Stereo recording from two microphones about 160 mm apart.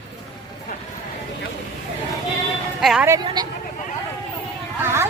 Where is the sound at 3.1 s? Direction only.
25° right (ahead or behind).